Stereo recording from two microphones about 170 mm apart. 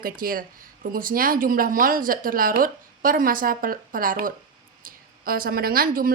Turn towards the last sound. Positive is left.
turn(degrees=-60)  # may be behind; listen again after turning